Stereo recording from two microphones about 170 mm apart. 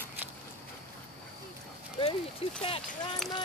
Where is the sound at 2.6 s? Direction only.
30° left (ahead or behind).